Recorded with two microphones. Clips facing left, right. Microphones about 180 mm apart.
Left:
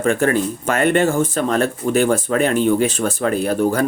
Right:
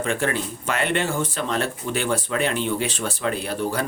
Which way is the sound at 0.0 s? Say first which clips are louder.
Left 7 dB; 45° left (ahead or behind).